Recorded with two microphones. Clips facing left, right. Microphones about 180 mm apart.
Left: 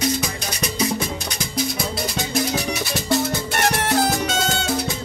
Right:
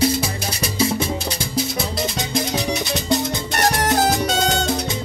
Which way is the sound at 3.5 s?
40° right (ahead or behind).